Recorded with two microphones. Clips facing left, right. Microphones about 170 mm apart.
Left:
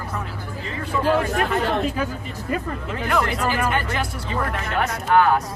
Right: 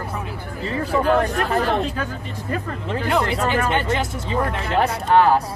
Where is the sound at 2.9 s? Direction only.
30° right (ahead or behind).